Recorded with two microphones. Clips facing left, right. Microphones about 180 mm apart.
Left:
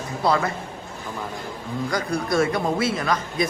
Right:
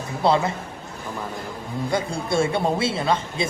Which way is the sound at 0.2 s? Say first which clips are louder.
Right 2 dB; 25° right (ahead or behind).